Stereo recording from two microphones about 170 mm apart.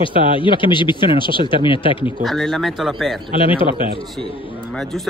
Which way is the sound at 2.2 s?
Centre (ahead or behind).